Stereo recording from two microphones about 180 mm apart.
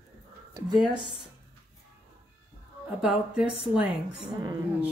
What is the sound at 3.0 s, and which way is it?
A woman's voice, 5° right (ahead or behind).